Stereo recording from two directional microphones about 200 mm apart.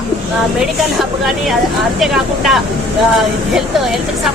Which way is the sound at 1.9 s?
Centre (ahead or behind).